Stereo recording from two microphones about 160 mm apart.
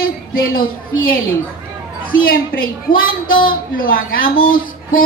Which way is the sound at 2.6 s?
60° left (ahead or behind).